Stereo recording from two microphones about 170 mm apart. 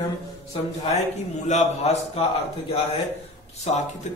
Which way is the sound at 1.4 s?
40° left (ahead or behind).